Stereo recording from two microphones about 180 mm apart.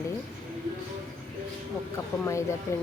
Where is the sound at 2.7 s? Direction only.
15° left (ahead or behind).